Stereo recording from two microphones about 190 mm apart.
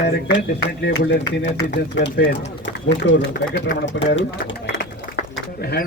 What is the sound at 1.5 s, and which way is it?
Speech, 40° left (ahead or behind).